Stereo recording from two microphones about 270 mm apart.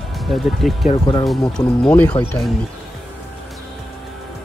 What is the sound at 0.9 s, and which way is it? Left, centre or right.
Speech, centre.